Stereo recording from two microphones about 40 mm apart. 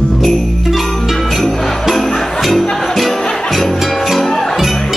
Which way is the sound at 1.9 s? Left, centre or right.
Centre.